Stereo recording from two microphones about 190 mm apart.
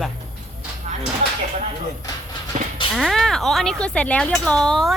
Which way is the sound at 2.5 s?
40° right (ahead or behind).